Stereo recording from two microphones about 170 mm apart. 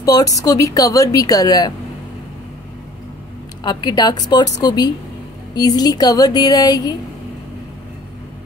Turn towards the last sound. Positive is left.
turn(degrees=25)  # may be behind; listen again after turning